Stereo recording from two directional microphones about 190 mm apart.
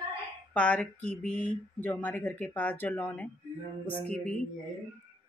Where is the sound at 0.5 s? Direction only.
5° left (ahead or behind).